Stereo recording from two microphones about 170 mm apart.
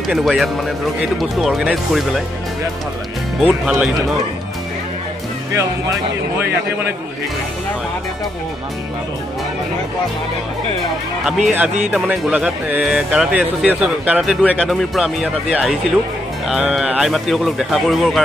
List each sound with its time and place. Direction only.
0.1 s speech: centre (ahead or behind)
3.3 s speech: 5° right (ahead or behind)
5.5 s speech: 15° right (ahead or behind)
11.4 s speech: 10° right (ahead or behind)